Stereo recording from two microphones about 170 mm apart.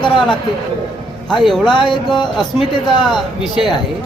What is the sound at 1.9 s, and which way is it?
Speech, 25° left (ahead or behind).